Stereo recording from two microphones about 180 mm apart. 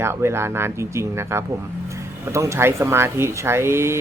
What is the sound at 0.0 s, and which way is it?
Speech, 15° right (ahead or behind).